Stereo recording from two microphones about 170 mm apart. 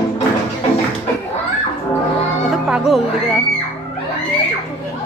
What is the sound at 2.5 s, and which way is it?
Speech, centre (ahead or behind).